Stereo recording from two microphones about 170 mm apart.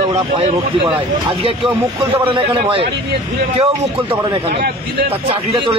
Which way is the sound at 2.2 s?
30° right (ahead or behind).